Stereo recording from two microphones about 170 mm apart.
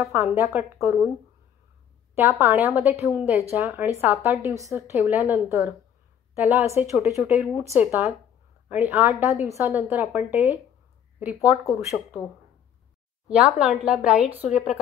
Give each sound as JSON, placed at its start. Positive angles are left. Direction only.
{"t": 0.0, "sound": "a woman's voice", "side_deg": -15}
{"t": 2.1, "sound": "a woman's voice", "side_deg": -15}
{"t": 7.2, "sound": "a woman's voice", "side_deg": -5}
{"t": 11.6, "sound": "speech", "side_deg": 20}
{"t": 13.3, "sound": "speech", "side_deg": -5}